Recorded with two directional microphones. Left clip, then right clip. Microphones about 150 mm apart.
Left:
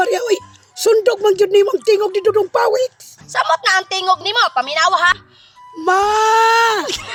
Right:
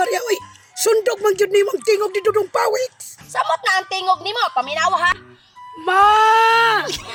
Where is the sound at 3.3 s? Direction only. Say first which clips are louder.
Left 3 dB; 15° right (ahead or behind).